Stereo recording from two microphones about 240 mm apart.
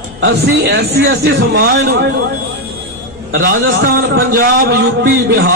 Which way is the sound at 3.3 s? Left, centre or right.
Right.